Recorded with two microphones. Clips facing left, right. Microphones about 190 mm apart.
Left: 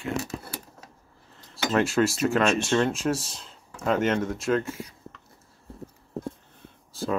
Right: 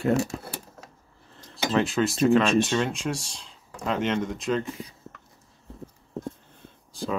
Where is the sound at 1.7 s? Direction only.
Centre (ahead or behind).